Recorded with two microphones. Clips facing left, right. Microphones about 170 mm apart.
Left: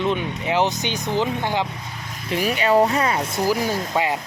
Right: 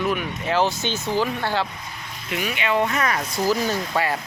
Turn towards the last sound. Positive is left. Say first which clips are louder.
# left 1 dB
turn(degrees=15)  # may be behind; listen again after turning